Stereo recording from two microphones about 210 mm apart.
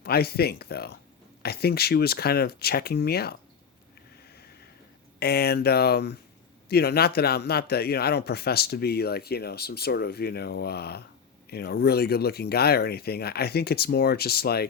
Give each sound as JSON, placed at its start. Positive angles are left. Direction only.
{"t": 0.0, "sound": "speech", "side_deg": 50}
{"t": 5.2, "sound": "speech", "side_deg": 50}